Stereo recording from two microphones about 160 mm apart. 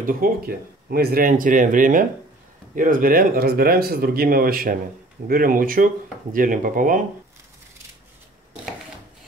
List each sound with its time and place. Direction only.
0.0 s speech: 70° right (ahead or behind)